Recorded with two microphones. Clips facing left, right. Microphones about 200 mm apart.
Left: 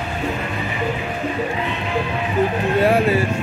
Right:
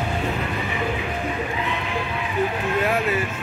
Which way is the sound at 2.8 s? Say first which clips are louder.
Left 7 dB; 30° left (ahead or behind).